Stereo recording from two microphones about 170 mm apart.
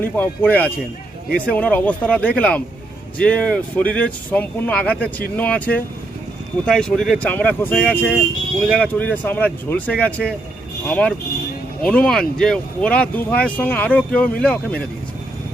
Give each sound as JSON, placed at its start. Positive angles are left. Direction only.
{"t": 0.0, "sound": "speech", "side_deg": 10}